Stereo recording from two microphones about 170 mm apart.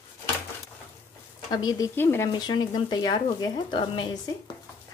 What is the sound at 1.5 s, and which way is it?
Speech, 20° left (ahead or behind).